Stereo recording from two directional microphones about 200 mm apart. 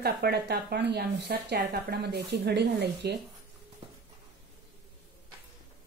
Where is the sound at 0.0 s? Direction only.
55° right (ahead or behind).